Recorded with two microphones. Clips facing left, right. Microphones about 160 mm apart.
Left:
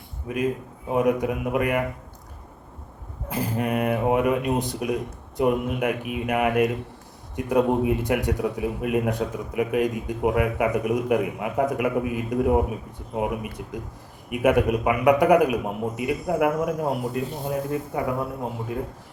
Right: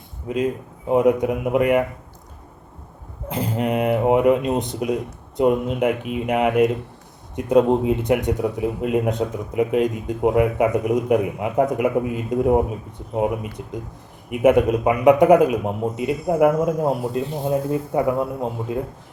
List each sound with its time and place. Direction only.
0.9 s a man's voice: 20° right (ahead or behind)
3.2 s a man's voice: 20° right (ahead or behind)